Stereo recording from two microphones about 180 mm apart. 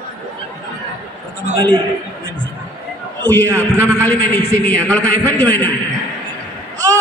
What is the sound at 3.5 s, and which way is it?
Speech, 15° right (ahead or behind).